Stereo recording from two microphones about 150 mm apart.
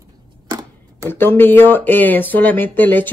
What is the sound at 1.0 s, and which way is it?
A woman's voice, 15° left (ahead or behind).